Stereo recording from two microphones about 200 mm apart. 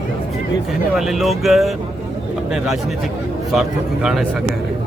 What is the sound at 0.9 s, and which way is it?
Speech, centre (ahead or behind).